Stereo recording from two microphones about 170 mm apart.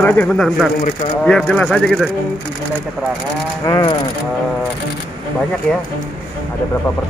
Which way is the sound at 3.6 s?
20° left (ahead or behind).